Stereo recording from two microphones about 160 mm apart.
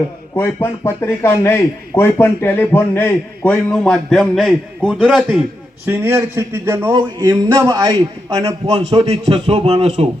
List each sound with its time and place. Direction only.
0.3 s speech: 15° left (ahead or behind); by 5.2 s centre (ahead or behind)
5.8 s a man's voice: 15° right (ahead or behind)
8.7 s a man's voice: 40° right (ahead or behind)